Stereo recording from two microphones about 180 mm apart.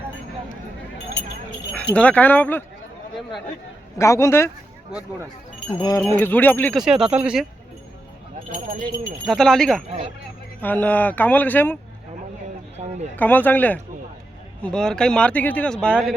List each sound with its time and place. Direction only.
2.0 s speech: 10° left (ahead or behind)
3.9 s speech: 15° left (ahead or behind)
5.7 s speech: 25° left (ahead or behind)
6.1 s speech: 10° left (ahead or behind)
6.7 s speech: 5° right (ahead or behind)
9.2 s speech: centre (ahead or behind)
12.7 s a sound: 35° right (ahead or behind)
13.1 s speech: 10° left (ahead or behind)